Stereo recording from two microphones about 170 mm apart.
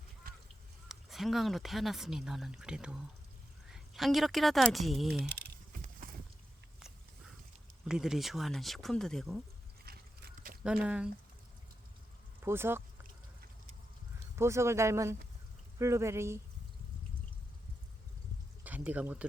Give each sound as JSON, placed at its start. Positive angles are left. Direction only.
{"t": 0.9, "sound": "speech", "side_deg": 0}
{"t": 5.7, "sound": "horse", "side_deg": -50}
{"t": 7.9, "sound": "speech", "side_deg": -5}
{"t": 9.8, "sound": "pig", "side_deg": -65}
{"t": 10.8, "sound": "speech", "side_deg": -5}
{"t": 12.4, "sound": "speech", "side_deg": -15}
{"t": 14.3, "sound": "speech", "side_deg": -15}
{"t": 18.6, "sound": "speech", "side_deg": -10}